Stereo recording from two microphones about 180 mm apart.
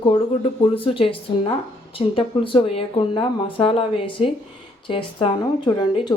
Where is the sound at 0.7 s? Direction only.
30° left (ahead or behind).